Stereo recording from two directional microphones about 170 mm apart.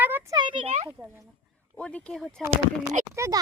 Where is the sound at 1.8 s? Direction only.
5° left (ahead or behind).